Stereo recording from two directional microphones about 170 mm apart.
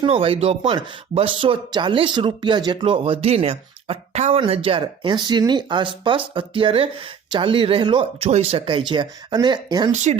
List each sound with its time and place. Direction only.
0.0 s speech: 35° right (ahead or behind)
9.9 s speech: 45° right (ahead or behind)